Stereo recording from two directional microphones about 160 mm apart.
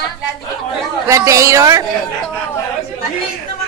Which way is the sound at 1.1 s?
20° right (ahead or behind).